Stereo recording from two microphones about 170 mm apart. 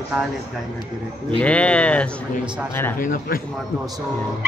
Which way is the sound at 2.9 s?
55° left (ahead or behind).